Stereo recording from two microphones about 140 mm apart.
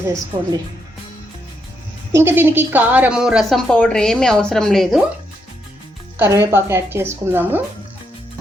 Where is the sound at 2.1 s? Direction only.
15° right (ahead or behind); by 5.0 s centre (ahead or behind).